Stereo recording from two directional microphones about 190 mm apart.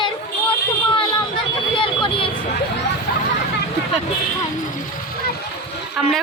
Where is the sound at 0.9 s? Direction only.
25° left (ahead or behind).